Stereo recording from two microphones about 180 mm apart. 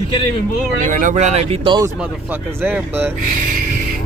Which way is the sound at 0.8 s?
45° right (ahead or behind).